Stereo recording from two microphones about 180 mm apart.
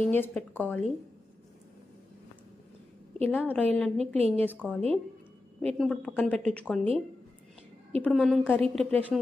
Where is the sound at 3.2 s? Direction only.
5° left (ahead or behind).